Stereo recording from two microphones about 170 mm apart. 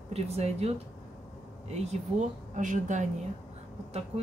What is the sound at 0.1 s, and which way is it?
Speech, 40° right (ahead or behind).